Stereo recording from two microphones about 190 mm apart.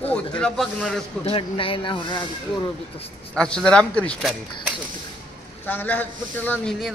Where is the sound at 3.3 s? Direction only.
5° left (ahead or behind).